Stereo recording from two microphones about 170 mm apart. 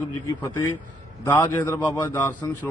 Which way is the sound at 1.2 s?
10° left (ahead or behind).